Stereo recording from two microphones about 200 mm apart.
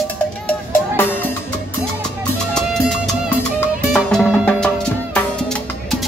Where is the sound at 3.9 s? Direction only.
5° left (ahead or behind).